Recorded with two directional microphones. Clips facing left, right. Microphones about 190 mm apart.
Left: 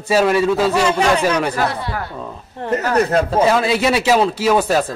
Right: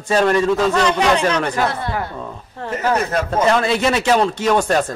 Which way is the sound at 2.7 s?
35° left (ahead or behind).